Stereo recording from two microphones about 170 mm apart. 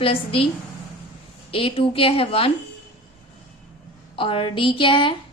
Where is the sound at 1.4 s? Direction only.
35° left (ahead or behind).